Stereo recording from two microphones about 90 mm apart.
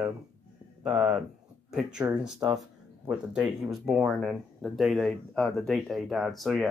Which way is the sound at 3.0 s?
5° right (ahead or behind).